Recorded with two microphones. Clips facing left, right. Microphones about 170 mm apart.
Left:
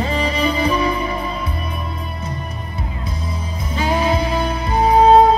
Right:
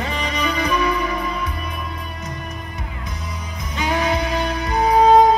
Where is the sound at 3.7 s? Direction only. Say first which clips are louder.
Left 2 dB; 30° left (ahead or behind).